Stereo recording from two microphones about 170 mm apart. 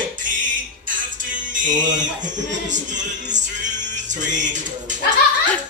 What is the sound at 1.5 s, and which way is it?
Music, 50° right (ahead or behind).